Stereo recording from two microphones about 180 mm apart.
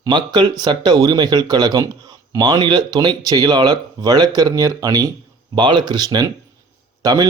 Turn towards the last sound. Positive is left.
turn(degrees=-20)  # may be behind; listen again after turning